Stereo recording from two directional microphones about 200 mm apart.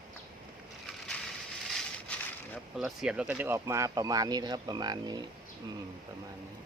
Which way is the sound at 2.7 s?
Centre (ahead or behind).